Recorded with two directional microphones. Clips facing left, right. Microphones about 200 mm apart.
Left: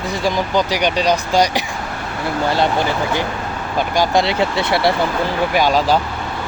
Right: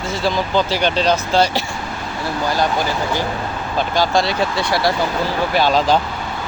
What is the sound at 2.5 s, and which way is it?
Speech, 25° left (ahead or behind).